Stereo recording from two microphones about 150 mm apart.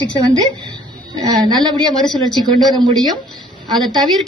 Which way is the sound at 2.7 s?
30° right (ahead or behind).